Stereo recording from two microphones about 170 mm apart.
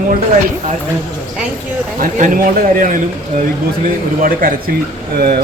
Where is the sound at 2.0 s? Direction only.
55° right (ahead or behind).